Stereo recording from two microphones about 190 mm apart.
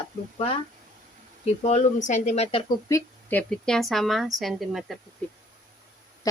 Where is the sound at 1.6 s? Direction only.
40° left (ahead or behind).